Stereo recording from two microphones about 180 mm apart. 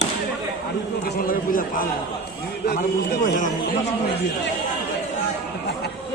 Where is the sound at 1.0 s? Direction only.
55° left (ahead or behind).